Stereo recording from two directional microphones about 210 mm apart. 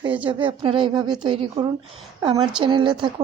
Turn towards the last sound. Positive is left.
turn(degrees=-25)  # may be behind; listen again after turning